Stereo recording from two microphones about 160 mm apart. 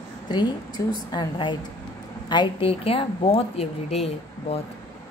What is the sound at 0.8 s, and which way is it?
A woman's voice, 20° left (ahead or behind).